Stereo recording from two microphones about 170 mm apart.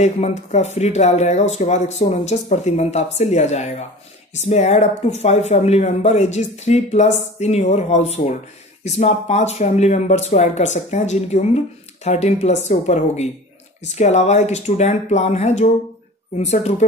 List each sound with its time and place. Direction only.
0.0 s speech: 45° left (ahead or behind)